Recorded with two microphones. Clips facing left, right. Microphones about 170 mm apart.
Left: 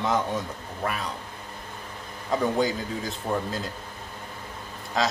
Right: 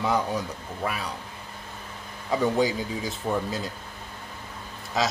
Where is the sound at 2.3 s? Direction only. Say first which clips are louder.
Right 1 dB; 5° right (ahead or behind).